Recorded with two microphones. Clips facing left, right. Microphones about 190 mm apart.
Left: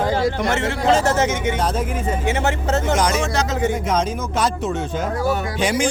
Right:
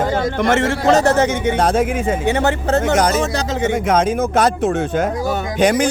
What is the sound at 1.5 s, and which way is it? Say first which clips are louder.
Speech: right 6 dB; 85° right.